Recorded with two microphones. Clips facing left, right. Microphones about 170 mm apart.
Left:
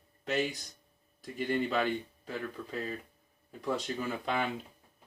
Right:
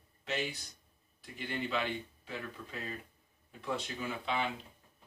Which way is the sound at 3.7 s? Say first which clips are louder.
Left 4 dB; 45° left (ahead or behind).